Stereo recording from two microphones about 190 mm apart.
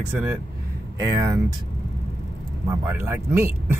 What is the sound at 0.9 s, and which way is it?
Speech, 20° right (ahead or behind).